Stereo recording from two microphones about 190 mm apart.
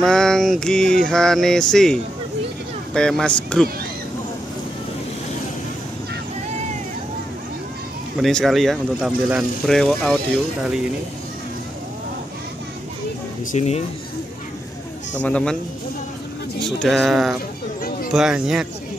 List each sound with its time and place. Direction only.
0.0 s speech: centre (ahead or behind)
8.2 s speech: centre (ahead or behind)
13.5 s speech: 35° left (ahead or behind)
15.1 s speech: 5° left (ahead or behind)
16.6 s speech: centre (ahead or behind)